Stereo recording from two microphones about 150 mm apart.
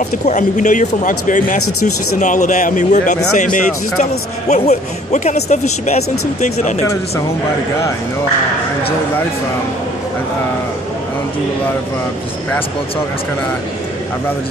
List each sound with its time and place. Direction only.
0.3 s speech: 55° left (ahead or behind)